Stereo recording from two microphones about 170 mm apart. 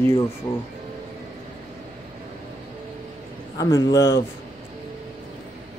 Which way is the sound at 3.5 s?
20° left (ahead or behind).